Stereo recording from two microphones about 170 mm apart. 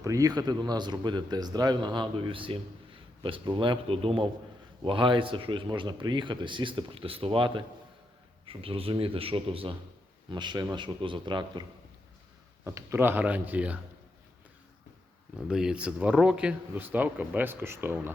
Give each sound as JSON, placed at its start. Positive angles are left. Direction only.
{"t": 0.0, "sound": "a man's voice", "side_deg": -20}
{"t": 12.6, "sound": "speech", "side_deg": -15}
{"t": 15.4, "sound": "speech", "side_deg": -5}